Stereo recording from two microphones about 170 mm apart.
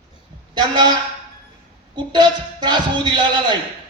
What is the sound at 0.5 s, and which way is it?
Speech, 25° right (ahead or behind).